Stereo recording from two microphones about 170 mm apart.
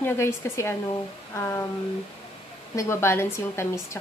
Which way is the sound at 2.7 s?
15° left (ahead or behind).